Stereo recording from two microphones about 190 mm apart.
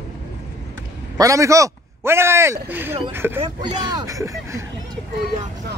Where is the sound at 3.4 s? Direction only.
25° right (ahead or behind).